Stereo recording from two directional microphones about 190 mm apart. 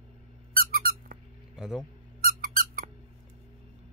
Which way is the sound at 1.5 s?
5° right (ahead or behind).